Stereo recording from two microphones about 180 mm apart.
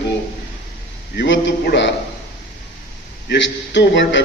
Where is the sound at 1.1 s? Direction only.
85° left.